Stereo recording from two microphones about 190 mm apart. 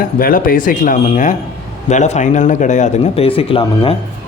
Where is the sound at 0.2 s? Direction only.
50° left (ahead or behind); by 3.9 s 30° left (ahead or behind).